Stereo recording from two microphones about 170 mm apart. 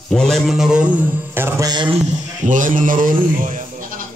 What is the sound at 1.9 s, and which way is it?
Speech, 45° right (ahead or behind).